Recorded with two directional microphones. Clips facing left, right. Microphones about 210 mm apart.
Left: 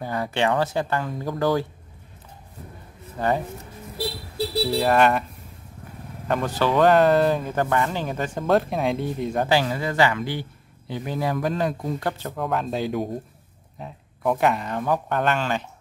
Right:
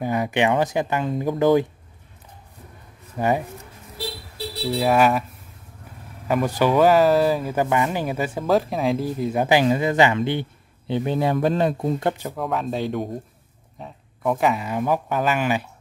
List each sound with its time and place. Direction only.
0.0 s speech: 15° right (ahead or behind)
3.2 s speech: 15° right (ahead or behind)
4.7 s speech: 5° right (ahead or behind)
6.2 s speech: 10° right (ahead or behind)
9.5 s speech: 15° right (ahead or behind)
12.3 s speech: centre (ahead or behind)